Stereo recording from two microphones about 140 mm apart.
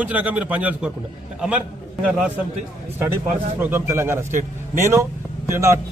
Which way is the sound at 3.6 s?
15° right (ahead or behind).